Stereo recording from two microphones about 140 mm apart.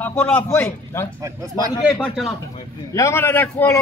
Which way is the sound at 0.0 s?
10° left (ahead or behind).